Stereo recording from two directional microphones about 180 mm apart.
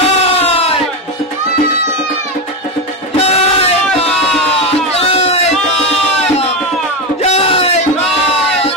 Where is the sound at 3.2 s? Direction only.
35° left (ahead or behind).